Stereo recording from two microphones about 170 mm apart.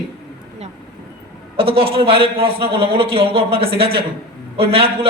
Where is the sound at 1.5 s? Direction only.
35° right (ahead or behind).